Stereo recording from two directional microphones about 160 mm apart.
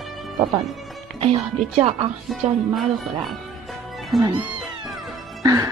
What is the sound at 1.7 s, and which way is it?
Speech, 35° right (ahead or behind).